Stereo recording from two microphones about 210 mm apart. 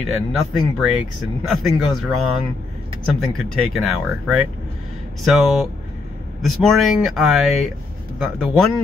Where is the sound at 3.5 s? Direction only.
90° right.